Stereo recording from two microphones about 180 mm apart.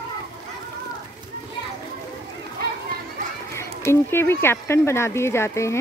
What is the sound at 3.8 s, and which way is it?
Speech, 15° left (ahead or behind).